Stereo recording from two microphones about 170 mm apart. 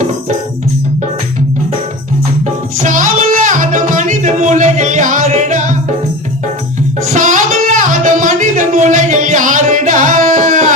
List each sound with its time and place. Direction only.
2.8 s music: 50° right (ahead or behind)
7.1 s music: 50° right (ahead or behind)